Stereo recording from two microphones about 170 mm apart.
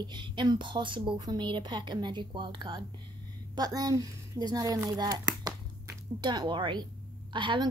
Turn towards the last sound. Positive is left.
turn(degrees=-30)  # may be behind; listen again after turning